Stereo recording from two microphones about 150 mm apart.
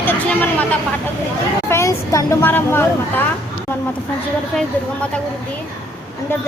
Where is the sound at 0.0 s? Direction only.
10° left (ahead or behind).